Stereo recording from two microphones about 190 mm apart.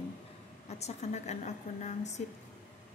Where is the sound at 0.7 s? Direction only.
35° left (ahead or behind).